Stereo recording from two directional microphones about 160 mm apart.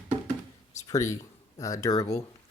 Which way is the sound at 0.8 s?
20° left (ahead or behind).